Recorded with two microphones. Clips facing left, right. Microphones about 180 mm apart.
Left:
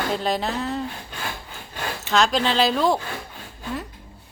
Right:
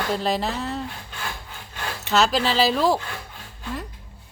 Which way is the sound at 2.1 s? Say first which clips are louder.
Even; 5° right (ahead or behind).